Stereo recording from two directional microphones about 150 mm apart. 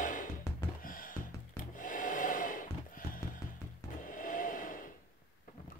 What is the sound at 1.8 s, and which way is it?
Wood, 65° left (ahead or behind).